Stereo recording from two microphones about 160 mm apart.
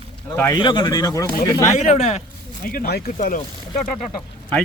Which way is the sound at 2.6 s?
75° left (ahead or behind).